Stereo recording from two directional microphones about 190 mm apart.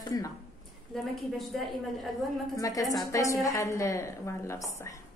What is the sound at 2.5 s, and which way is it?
A woman's voice, 20° left (ahead or behind).